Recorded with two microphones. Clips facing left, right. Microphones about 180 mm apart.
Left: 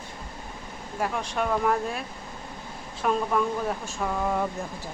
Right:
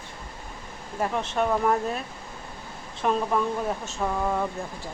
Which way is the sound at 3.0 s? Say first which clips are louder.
Even; 5° right (ahead or behind).